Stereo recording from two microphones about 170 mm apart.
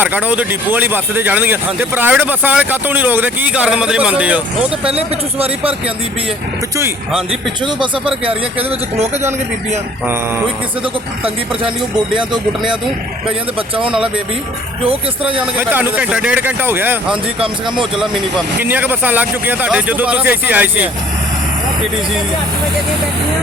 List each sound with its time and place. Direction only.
0.0 s speech: 10° right (ahead or behind)
4.9 s speech: 35° right (ahead or behind)
8.2 s speech: 35° right (ahead or behind)
10.8 s speech: 30° right (ahead or behind)
13.6 s speech: 30° right (ahead or behind)
15.5 s speech: 10° right (ahead or behind)